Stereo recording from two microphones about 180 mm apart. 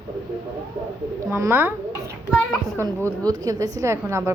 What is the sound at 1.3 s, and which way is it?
Speech, 15° right (ahead or behind).